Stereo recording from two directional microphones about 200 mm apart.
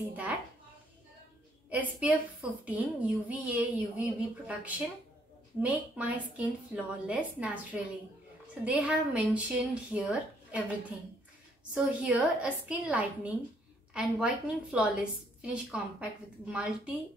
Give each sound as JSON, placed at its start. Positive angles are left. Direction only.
{"t": 0.1, "sound": "a woman's voice", "side_deg": -5}
{"t": 1.7, "sound": "a woman's voice", "side_deg": -5}
{"t": 11.7, "sound": "a woman's voice", "side_deg": -5}